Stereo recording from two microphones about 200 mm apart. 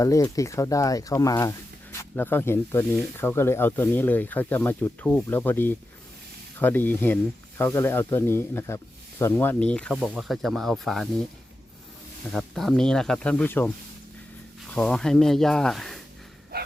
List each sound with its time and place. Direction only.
0.0 s speech: 15° left (ahead or behind); by 11.1 s centre (ahead or behind)
12.3 s speech: centre (ahead or behind)
16.5 s dog: 50° right (ahead or behind)